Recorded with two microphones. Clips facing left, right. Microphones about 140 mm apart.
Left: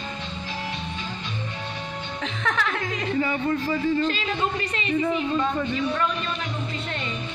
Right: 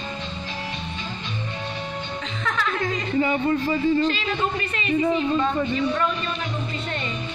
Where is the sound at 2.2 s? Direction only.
75° left (ahead or behind).